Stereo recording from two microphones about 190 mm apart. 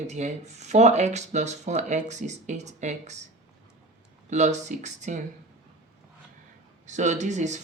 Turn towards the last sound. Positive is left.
turn(degrees=-40)  # may be behind; listen again after turning